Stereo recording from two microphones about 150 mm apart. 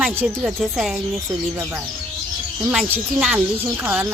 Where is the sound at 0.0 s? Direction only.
10° right (ahead or behind).